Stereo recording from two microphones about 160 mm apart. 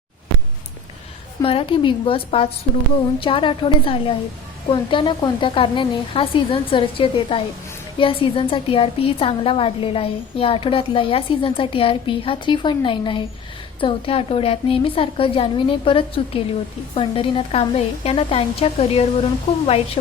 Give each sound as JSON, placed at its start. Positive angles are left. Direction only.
{"t": 1.4, "sound": "a woman's voice", "side_deg": 35}